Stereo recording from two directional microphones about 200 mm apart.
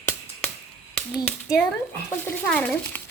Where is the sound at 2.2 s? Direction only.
10° left (ahead or behind).